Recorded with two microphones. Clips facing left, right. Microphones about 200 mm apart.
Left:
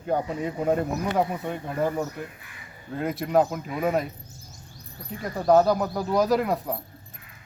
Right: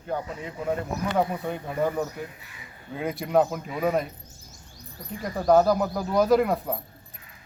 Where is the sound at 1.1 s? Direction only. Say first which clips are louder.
Even; centre (ahead or behind).